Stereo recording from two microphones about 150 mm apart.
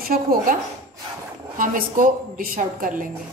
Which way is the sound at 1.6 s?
65° right (ahead or behind).